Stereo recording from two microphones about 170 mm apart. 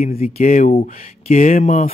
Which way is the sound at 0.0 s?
40° left (ahead or behind).